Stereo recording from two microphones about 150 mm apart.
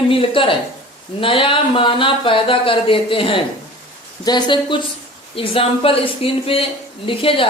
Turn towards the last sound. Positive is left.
turn(degrees=35)  # may be behind; listen again after turning